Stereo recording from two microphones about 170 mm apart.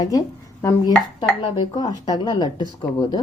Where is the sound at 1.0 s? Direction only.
30° left (ahead or behind).